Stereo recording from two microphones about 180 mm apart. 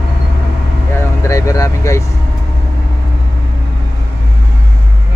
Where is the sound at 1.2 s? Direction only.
15° left (ahead or behind).